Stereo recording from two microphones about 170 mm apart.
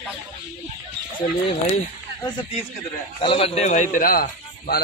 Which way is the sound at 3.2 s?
30° left (ahead or behind).